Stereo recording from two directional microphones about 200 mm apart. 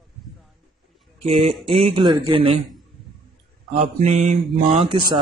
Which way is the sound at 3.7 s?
35° right (ahead or behind).